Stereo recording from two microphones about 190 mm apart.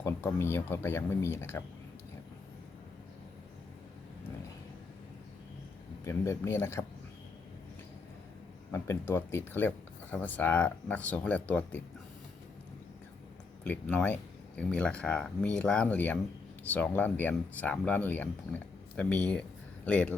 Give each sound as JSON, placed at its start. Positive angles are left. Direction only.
{"t": 0.0, "sound": "speech", "side_deg": 15}
{"t": 6.1, "sound": "speech", "side_deg": 15}
{"t": 8.7, "sound": "speech", "side_deg": 10}
{"t": 13.7, "sound": "speech", "side_deg": 10}